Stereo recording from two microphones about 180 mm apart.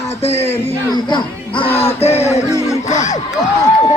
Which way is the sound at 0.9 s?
25° left (ahead or behind).